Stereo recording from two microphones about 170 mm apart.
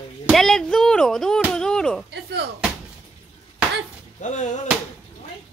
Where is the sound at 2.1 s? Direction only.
70° right (ahead or behind).